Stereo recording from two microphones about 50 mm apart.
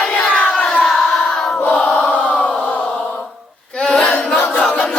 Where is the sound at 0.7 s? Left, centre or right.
Left.